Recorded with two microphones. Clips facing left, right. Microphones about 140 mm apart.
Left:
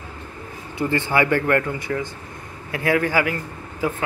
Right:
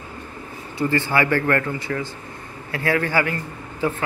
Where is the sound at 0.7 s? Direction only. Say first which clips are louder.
Even; 20° left (ahead or behind).